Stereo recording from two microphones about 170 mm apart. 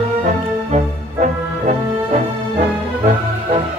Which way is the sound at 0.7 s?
45° right (ahead or behind).